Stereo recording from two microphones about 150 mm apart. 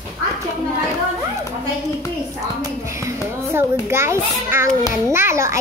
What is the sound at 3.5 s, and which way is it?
A child's voice, 15° right (ahead or behind).